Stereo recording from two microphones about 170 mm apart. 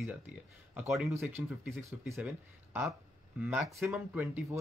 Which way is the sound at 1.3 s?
15° right (ahead or behind).